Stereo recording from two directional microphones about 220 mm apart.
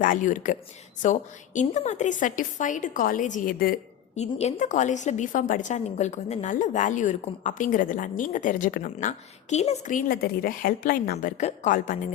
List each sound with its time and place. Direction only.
0.0 s a woman's voice: 35° left (ahead or behind)